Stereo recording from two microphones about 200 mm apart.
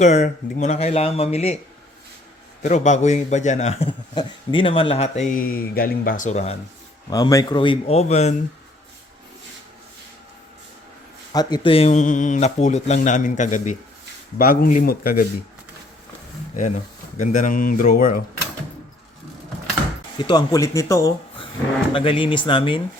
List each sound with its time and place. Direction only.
0.0 s a man's voice: 35° left (ahead or behind)
2.6 s a man's voice: 35° left (ahead or behind)
7.1 s speech: 15° left (ahead or behind); by 8.4 s 35° left (ahead or behind)
11.3 s a man's voice: 20° left (ahead or behind); by 15.3 s 45° left (ahead or behind)
16.6 s speech: 35° left (ahead or behind)
20.1 s speech: 20° left (ahead or behind)